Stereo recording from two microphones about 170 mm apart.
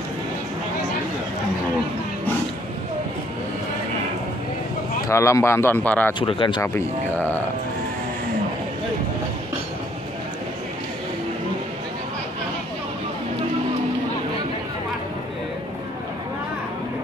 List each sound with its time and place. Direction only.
5.0 s speech: 15° left (ahead or behind)
6.1 s speech: 30° left (ahead or behind)
6.6 s speech: 15° left (ahead or behind)